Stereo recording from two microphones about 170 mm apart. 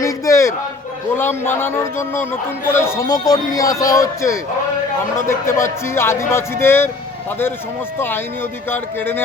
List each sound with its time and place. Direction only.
0.0 s a sound: 15° left (ahead or behind)
1.1 s speech: 15° left (ahead or behind)
7.9 s speech: 15° left (ahead or behind)